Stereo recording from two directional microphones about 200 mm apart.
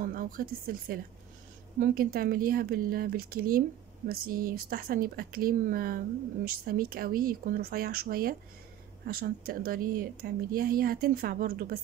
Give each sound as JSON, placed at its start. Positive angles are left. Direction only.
{"t": 0.0, "sound": "a woman's voice", "side_deg": -45}